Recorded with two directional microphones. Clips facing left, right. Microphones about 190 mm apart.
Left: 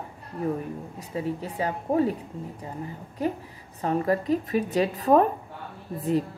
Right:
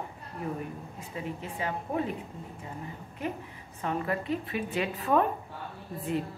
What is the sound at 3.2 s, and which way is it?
A woman's voice, 35° left (ahead or behind).